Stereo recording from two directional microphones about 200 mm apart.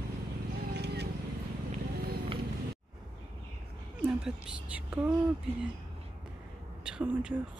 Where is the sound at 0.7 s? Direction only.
55° right (ahead or behind).